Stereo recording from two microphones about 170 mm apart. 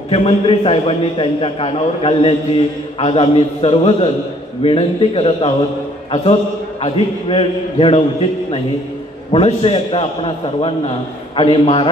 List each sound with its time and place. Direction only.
0.1 s a man's voice: 35° left (ahead or behind)
6.8 s a man's voice: 30° left (ahead or behind)